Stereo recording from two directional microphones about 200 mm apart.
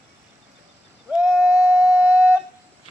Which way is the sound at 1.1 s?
5° right (ahead or behind).